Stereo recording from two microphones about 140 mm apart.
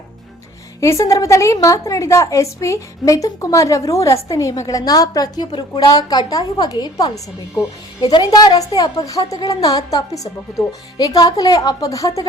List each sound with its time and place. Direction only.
0.8 s a woman's voice: 20° left (ahead or behind)